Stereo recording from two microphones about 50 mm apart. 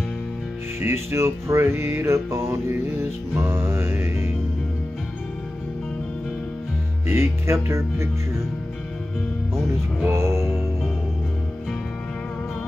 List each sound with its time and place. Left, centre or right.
0.7 s music: right
7.1 s speech: right
10.1 s music: right